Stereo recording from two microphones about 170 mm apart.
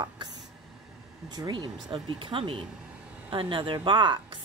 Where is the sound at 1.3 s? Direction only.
25° right (ahead or behind).